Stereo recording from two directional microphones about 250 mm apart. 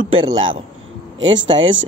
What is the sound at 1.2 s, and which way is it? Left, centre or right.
Speech, right.